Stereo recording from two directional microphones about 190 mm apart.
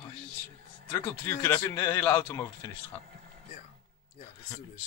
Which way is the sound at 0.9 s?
15° left (ahead or behind).